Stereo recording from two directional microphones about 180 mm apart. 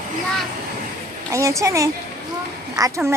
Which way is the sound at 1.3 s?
15° right (ahead or behind).